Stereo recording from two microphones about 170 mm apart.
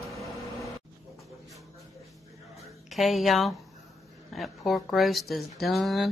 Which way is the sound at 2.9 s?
Centre (ahead or behind).